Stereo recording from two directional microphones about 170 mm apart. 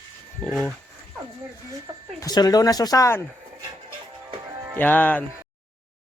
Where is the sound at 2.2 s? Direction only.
25° left (ahead or behind).